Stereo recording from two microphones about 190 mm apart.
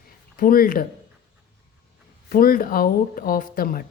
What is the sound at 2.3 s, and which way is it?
Speech, 50° left (ahead or behind).